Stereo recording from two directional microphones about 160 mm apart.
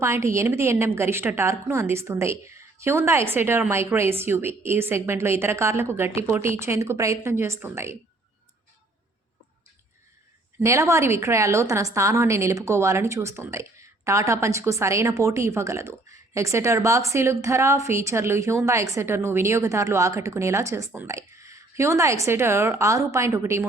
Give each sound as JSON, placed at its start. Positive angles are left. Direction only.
{"t": 0.0, "sound": "speech", "side_deg": -15}
{"t": 10.6, "sound": "a woman's voice", "side_deg": -20}